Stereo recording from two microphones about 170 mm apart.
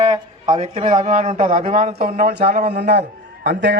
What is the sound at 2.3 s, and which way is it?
A man's voice, 65° right (ahead or behind).